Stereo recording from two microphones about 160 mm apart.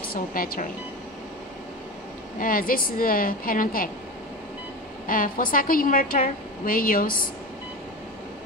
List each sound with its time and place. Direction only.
0.1 s a woman's voice: 60° left (ahead or behind)
2.3 s a woman's voice: 60° left (ahead or behind)
5.0 s a woman's voice: 60° left (ahead or behind)